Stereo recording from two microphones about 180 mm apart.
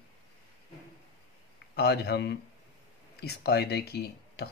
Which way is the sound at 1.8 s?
65° left (ahead or behind).